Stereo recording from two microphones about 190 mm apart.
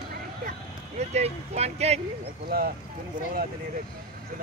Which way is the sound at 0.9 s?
35° right (ahead or behind).